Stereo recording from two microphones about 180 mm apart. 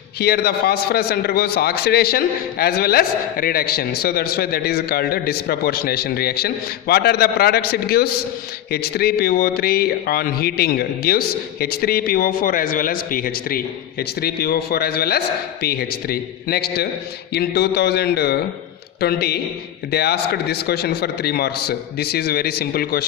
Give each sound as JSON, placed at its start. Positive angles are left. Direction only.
{"t": 0.2, "sound": "a man's voice", "side_deg": 60}